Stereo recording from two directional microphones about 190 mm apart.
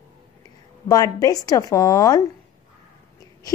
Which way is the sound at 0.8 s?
20° left (ahead or behind).